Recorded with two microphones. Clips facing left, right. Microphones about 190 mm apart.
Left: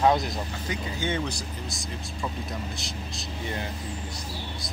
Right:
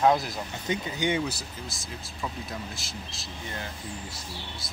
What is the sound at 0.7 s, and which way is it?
Speech, 15° right (ahead or behind).